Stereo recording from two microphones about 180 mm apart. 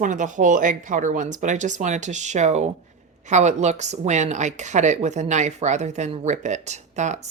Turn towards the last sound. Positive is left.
turn(degrees=-40)  # may be behind; listen again after turning